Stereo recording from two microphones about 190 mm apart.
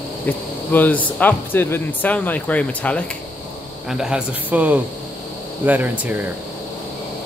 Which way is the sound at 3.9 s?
5° right (ahead or behind).